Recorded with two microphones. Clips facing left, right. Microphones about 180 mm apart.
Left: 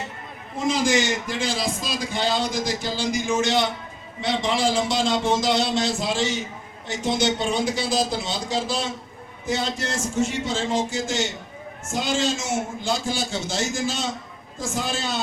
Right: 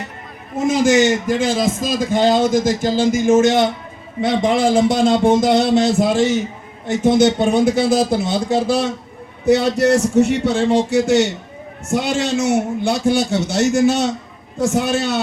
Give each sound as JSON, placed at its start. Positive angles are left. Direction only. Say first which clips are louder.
{"t": 0.9, "sound": "a man's voice", "louder": "right 9 dB", "side_deg": -55}